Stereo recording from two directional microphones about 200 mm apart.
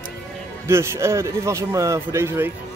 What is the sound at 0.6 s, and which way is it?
Speech, 15° right (ahead or behind).